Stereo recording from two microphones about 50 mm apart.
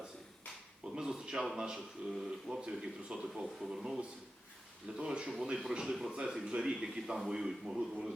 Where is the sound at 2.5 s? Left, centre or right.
Centre.